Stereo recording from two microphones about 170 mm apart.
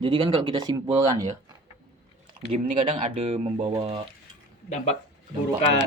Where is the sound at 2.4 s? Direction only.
35° right (ahead or behind).